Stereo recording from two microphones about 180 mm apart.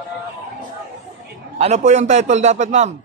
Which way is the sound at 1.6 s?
40° right (ahead or behind).